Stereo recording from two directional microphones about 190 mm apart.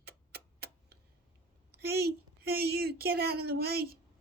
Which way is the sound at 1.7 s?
55° right (ahead or behind).